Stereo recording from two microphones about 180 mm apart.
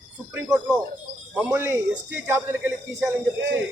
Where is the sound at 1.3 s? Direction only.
10° right (ahead or behind).